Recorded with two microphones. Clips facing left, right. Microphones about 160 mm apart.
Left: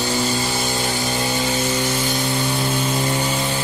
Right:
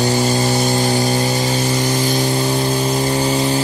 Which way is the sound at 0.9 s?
40° right (ahead or behind).